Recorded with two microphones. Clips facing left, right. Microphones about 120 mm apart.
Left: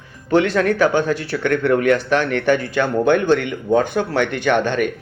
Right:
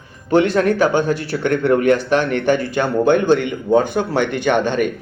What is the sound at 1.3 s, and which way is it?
Speech, 35° right (ahead or behind).